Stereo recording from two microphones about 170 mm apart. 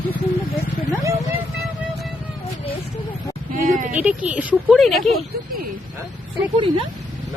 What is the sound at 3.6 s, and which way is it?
Speech, 50° right (ahead or behind).